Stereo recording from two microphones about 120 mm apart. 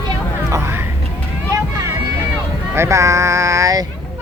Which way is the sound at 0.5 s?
20° right (ahead or behind).